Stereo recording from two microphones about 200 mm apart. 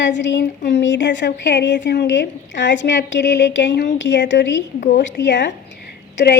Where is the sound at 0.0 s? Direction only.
65° left (ahead or behind).